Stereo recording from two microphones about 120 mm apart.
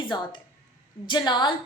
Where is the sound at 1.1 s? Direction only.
35° left (ahead or behind).